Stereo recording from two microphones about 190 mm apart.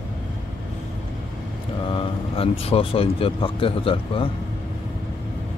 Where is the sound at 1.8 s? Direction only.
30° left (ahead or behind).